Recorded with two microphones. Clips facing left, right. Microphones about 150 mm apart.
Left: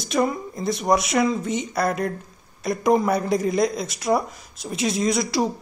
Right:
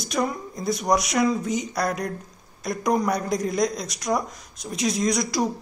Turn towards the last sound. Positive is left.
turn(degrees=0)  # may be behind; listen again after turning